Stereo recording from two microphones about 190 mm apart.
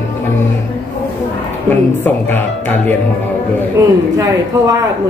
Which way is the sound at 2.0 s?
10° left (ahead or behind).